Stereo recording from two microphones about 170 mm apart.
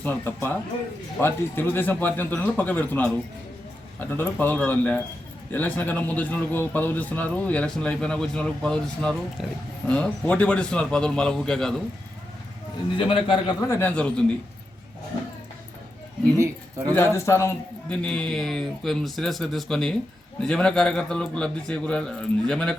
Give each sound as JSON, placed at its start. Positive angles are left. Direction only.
{"t": 0.0, "sound": "a man's voice", "side_deg": 10}
{"t": 13.0, "sound": "a man's voice", "side_deg": 30}
{"t": 13.7, "sound": "a man's voice", "side_deg": 10}
{"t": 16.4, "sound": "speech", "side_deg": -20}
{"t": 16.9, "sound": "a man's voice", "side_deg": 15}